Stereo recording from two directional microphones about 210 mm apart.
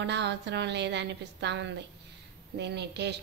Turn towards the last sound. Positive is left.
turn(degrees=-55)  # may be behind; listen again after turning